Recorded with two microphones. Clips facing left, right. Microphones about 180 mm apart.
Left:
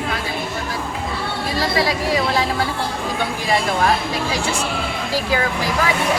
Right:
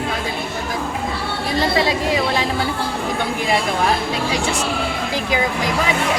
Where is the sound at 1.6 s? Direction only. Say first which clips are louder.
Right 2 dB; 20° right (ahead or behind).